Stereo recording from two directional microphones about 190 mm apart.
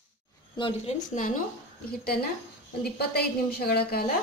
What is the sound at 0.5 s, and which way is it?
Speech, 25° left (ahead or behind).